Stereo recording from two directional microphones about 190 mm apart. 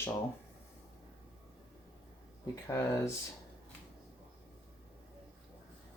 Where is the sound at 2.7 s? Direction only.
15° left (ahead or behind).